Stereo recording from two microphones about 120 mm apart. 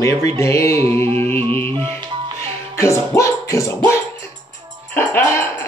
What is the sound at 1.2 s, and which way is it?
Music, 15° left (ahead or behind).